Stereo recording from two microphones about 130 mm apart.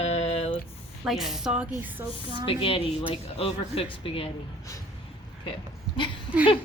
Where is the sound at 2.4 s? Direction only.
45° left (ahead or behind).